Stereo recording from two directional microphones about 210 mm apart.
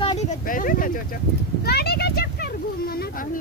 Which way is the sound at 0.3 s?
40° left (ahead or behind).